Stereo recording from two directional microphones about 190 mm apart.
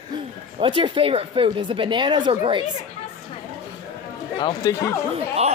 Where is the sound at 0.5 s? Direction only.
25° right (ahead or behind).